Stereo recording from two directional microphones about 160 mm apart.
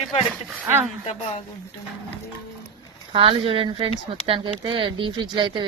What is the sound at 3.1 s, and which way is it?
Speech, 35° right (ahead or behind).